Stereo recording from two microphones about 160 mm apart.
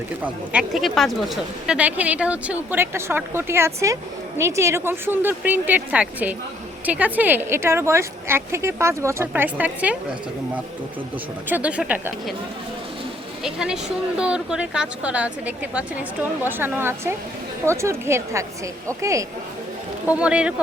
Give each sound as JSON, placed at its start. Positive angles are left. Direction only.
{"t": 0.2, "sound": "speech", "side_deg": -5}
{"t": 11.4, "sound": "speech", "side_deg": -10}
{"t": 13.4, "sound": "speech", "side_deg": -5}
{"t": 20.1, "sound": "speech", "side_deg": -5}